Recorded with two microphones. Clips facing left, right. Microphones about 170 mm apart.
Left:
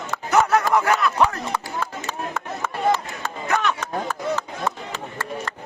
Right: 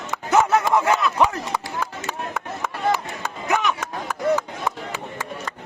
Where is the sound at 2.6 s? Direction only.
15° right (ahead or behind).